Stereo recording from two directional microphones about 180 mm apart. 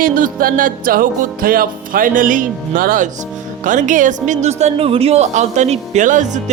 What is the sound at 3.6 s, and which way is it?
Speech, 45° right (ahead or behind).